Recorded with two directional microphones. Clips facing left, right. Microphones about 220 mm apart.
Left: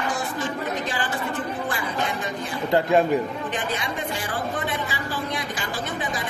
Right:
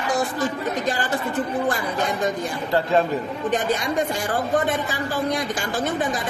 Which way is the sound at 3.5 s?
40° right (ahead or behind).